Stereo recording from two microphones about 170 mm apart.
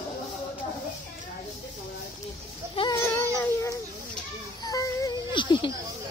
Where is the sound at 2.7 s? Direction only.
30° left (ahead or behind).